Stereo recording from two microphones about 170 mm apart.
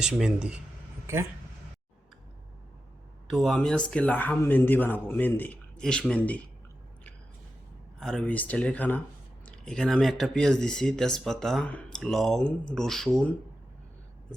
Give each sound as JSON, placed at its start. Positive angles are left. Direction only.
{"t": 0.0, "sound": "speech", "side_deg": -5}
{"t": 3.2, "sound": "speech", "side_deg": 0}
{"t": 7.9, "sound": "speech", "side_deg": 5}